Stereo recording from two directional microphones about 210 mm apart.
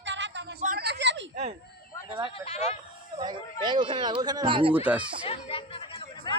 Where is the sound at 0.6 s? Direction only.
45° right (ahead or behind).